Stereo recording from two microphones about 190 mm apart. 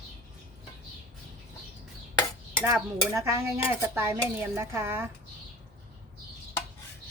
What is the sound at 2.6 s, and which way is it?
Dishes, 15° right (ahead or behind).